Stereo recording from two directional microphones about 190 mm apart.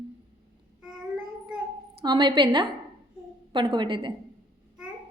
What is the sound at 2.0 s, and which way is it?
A woman's voice, 25° right (ahead or behind).